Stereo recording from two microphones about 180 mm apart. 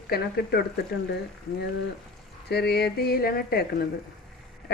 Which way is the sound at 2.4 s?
65° left (ahead or behind).